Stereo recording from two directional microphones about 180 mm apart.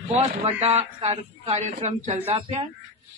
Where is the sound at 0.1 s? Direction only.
35° right (ahead or behind).